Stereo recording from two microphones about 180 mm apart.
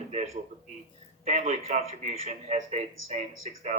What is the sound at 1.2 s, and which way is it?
Speech, 35° right (ahead or behind).